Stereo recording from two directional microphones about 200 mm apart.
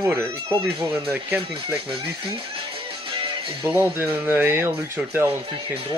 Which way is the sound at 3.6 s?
10° right (ahead or behind).